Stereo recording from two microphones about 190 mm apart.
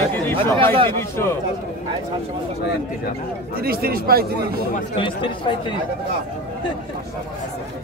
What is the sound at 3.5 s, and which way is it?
Speech, 50° right (ahead or behind).